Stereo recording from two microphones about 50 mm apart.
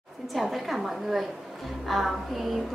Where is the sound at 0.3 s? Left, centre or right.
Centre.